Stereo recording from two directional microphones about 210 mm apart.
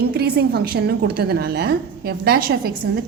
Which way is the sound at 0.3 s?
45° right (ahead or behind).